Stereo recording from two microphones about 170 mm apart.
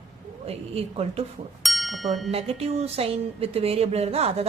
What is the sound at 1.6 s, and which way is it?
Music, centre (ahead or behind).